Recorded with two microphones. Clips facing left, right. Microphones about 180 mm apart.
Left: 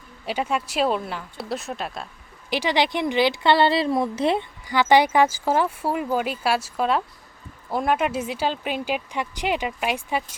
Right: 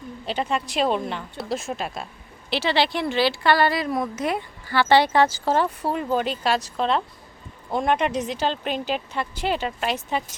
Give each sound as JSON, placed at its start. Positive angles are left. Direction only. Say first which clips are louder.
{"t": 0.3, "sound": "speech", "louder": "left 1 dB", "side_deg": 10}
{"t": 2.5, "sound": "a woman's voice", "louder": "even", "side_deg": 15}
{"t": 4.6, "sound": "speech", "louder": "even", "side_deg": 15}